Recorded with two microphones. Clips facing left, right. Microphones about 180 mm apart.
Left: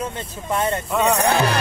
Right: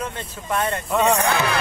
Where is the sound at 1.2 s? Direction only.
35° left (ahead or behind).